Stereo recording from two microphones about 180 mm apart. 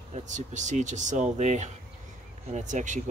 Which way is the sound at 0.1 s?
40° right (ahead or behind).